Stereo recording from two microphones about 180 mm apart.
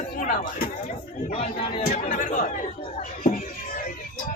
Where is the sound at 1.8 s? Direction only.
50° left (ahead or behind).